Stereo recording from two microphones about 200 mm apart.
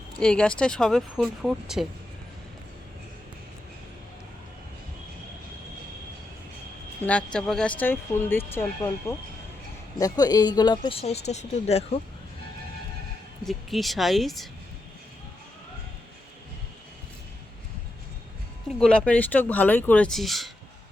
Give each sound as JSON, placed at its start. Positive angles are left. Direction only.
{"t": 0.2, "sound": "speech", "side_deg": 5}
{"t": 7.0, "sound": "speech", "side_deg": 5}
{"t": 13.4, "sound": "speech", "side_deg": 0}
{"t": 18.8, "sound": "speech", "side_deg": 5}